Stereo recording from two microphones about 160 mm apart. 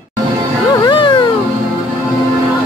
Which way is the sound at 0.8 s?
30° left (ahead or behind).